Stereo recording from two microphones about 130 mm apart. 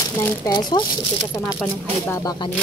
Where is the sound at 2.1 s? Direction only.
25° left (ahead or behind).